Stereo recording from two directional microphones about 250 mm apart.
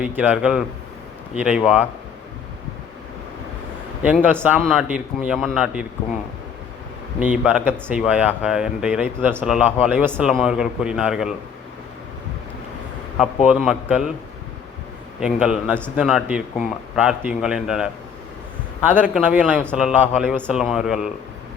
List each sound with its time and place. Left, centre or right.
0.0 s speech: centre
4.0 s speech: centre
7.2 s speech: centre
13.1 s speech: centre
15.2 s speech: centre
19.1 s speech: centre